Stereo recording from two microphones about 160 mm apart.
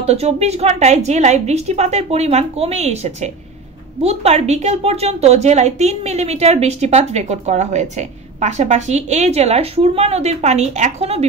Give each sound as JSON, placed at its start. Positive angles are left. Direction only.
{"t": 0.0, "sound": "a woman's voice", "side_deg": -40}